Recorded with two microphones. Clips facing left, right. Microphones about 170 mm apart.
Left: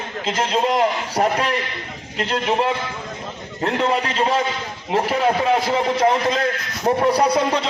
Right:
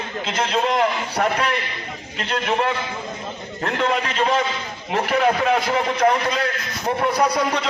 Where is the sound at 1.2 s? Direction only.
40° left (ahead or behind).